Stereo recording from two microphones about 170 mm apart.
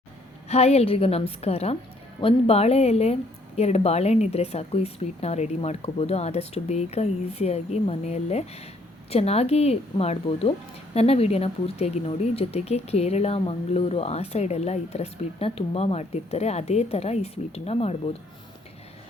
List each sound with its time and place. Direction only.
0.4 s speech: 40° left (ahead or behind)